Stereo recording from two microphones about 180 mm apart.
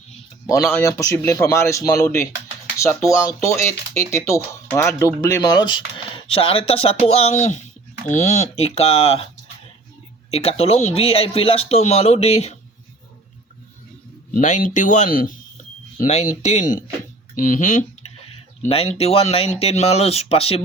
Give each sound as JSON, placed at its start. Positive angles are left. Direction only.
{"t": 0.7, "sound": "speech", "side_deg": 15}
{"t": 10.3, "sound": "speech", "side_deg": 35}
{"t": 14.3, "sound": "speech", "side_deg": 45}